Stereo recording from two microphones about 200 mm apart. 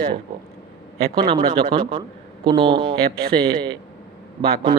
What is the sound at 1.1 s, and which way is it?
Speech, 30° right (ahead or behind).